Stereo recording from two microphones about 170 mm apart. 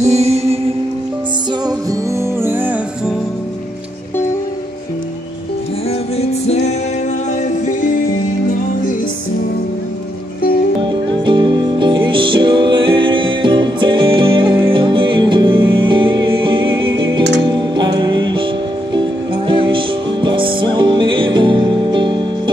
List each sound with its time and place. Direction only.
0.0 s music: 40° right (ahead or behind)
1.7 s music: 20° right (ahead or behind)
5.9 s music: 40° left (ahead or behind)
10.8 s music: 30° right (ahead or behind)
17.2 s music: 90° right
17.5 s music: 25° right (ahead or behind)